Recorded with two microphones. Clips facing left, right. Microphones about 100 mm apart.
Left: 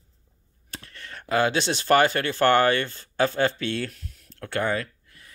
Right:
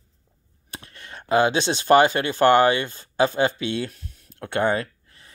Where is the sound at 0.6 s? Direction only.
20° right (ahead or behind).